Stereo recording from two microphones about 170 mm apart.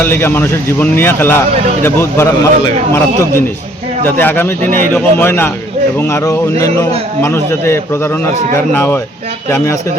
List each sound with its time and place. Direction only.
0.0 s a man's voice: 15° left (ahead or behind)